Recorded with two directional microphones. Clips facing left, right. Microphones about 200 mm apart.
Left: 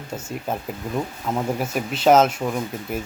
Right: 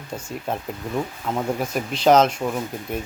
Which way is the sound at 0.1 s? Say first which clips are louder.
Even; 5° left (ahead or behind).